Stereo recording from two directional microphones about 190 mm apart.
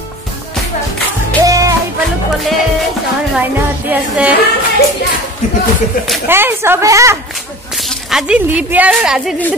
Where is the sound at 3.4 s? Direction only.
5° right (ahead or behind).